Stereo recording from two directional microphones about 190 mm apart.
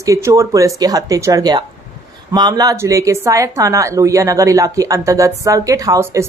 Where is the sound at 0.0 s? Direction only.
15° right (ahead or behind).